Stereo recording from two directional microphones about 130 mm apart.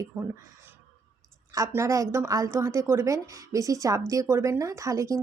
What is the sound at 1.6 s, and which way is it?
A woman's voice, 25° right (ahead or behind).